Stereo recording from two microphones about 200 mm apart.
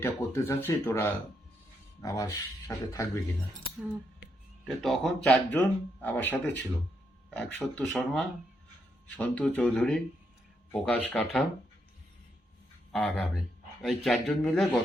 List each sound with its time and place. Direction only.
0.0 s speech: 10° left (ahead or behind)
3.8 s speech: 5° right (ahead or behind)
12.9 s speech: 5° left (ahead or behind)